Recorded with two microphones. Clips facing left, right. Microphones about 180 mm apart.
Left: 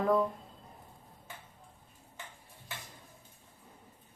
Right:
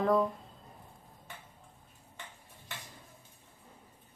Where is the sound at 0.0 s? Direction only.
5° left (ahead or behind).